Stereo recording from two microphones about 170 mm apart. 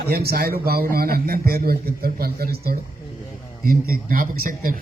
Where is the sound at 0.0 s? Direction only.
65° right (ahead or behind).